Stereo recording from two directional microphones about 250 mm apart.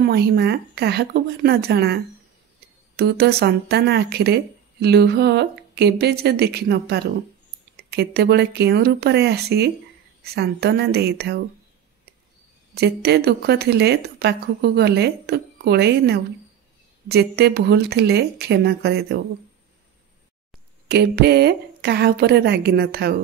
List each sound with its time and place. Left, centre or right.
0.0 s speech: right
3.0 s speech: right
12.7 s speech: right
20.9 s speech: right